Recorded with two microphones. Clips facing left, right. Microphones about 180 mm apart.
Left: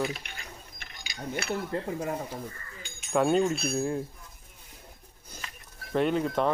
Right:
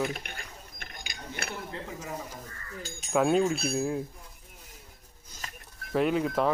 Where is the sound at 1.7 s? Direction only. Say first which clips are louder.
Left 7 dB; 50° left (ahead or behind).